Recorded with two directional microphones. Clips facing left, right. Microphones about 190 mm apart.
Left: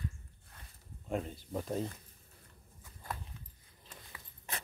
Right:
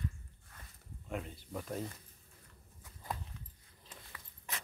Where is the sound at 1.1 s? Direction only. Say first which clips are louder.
Left 5 dB; 30° left (ahead or behind).